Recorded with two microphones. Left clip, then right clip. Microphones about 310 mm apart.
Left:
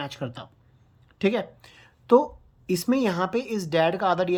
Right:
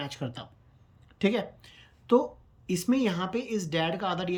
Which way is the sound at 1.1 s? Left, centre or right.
Centre.